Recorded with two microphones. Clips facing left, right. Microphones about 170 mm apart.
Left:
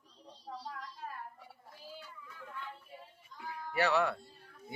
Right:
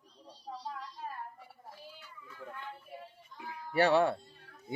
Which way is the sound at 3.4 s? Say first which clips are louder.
Right 4 dB; 25° right (ahead or behind).